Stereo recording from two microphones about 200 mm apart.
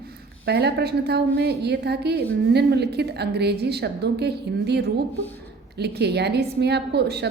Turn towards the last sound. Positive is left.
turn(degrees=-55)  # may be behind; listen again after turning